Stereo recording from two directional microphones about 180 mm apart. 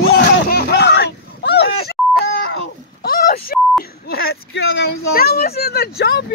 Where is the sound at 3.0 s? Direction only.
55° left (ahead or behind).